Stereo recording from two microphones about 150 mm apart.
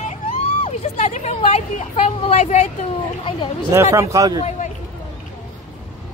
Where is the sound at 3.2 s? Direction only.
35° left (ahead or behind).